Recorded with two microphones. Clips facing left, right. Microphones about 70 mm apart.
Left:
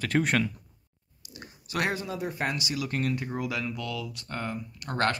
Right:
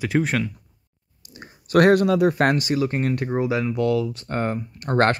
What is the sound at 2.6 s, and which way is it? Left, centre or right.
Speech, right.